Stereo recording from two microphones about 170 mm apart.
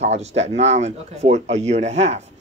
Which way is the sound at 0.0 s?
40° right (ahead or behind).